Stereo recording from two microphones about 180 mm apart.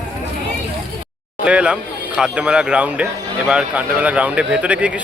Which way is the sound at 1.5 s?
5° right (ahead or behind).